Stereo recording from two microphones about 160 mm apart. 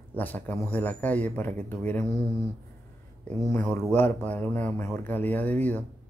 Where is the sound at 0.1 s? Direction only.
10° left (ahead or behind).